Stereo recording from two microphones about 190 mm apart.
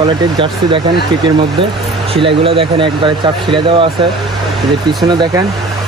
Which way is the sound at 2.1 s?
30° right (ahead or behind).